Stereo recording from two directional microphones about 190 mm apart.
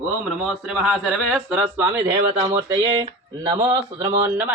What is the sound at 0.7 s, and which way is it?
A man's voice, 5° right (ahead or behind).